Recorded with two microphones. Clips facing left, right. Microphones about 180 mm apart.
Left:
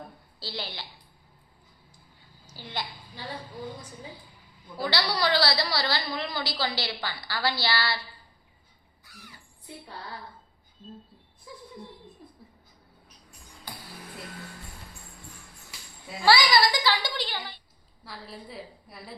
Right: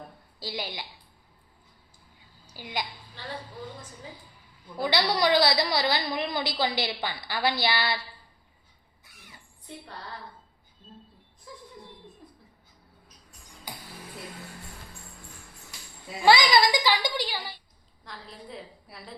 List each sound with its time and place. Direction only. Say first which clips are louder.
0.3 s a child's voice: right 3 dB; 15° right (ahead or behind)
2.5 s a child's voice: right 2 dB; 15° right (ahead or behind)
3.2 s speech: left 1 dB; 10° left (ahead or behind)
4.8 s a woman's voice: right 3 dB; 20° right (ahead or behind)
9.0 s crow: left 3 dB; 20° right (ahead or behind)
13.7 s music: right 1 dB; 15° right (ahead or behind)
16.2 s a child's voice: right 2 dB; 20° right (ahead or behind)
18.0 s a woman's voice: left 1 dB; 5° left (ahead or behind)